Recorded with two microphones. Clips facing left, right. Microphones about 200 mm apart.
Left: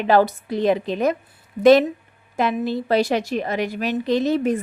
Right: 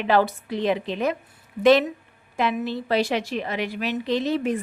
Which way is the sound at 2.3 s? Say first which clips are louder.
Left 3 dB; 40° left (ahead or behind).